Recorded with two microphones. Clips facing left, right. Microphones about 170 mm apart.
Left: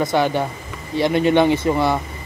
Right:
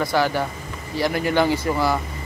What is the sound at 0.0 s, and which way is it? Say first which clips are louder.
Speech: left 2 dB; 20° left (ahead or behind).